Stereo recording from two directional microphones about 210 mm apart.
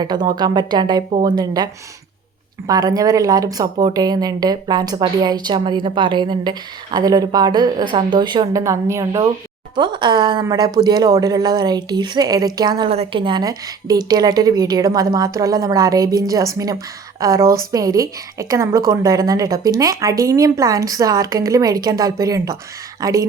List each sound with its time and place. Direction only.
0.0 s a woman's voice: 20° right (ahead or behind)